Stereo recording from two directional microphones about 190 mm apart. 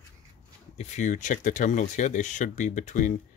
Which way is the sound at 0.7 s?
40° left (ahead or behind).